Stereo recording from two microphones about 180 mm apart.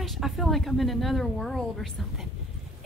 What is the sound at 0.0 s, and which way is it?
A woman's voice, centre (ahead or behind).